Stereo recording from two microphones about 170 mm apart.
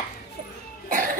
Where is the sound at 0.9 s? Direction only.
50° right (ahead or behind).